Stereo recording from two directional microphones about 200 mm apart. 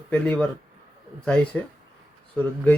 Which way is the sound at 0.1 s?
5° left (ahead or behind).